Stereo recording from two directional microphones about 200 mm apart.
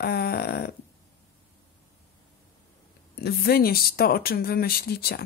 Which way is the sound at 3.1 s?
50° left (ahead or behind).